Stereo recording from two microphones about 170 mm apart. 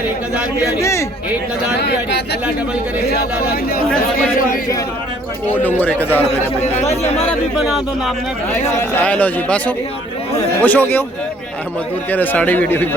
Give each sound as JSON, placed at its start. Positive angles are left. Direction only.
{"t": 0.6, "sound": "speech", "side_deg": 20}
{"t": 1.7, "sound": "speech", "side_deg": 80}
{"t": 3.1, "sound": "speech", "side_deg": 65}
{"t": 5.6, "sound": "speech", "side_deg": 10}
{"t": 6.9, "sound": "speech", "side_deg": 35}
{"t": 7.5, "sound": "speech", "side_deg": 0}
{"t": 8.5, "sound": "speech", "side_deg": 10}
{"t": 12.1, "sound": "speech", "side_deg": 10}